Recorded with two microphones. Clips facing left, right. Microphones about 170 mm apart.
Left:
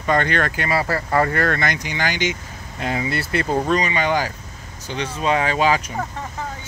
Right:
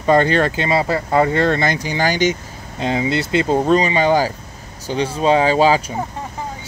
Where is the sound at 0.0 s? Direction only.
30° right (ahead or behind).